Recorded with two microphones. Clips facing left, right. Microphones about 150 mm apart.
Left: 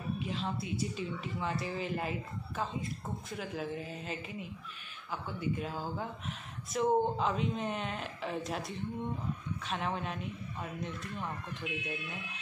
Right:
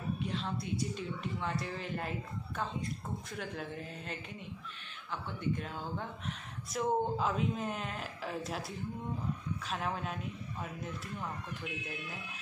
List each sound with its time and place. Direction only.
0.2 s a woman's voice: centre (ahead or behind)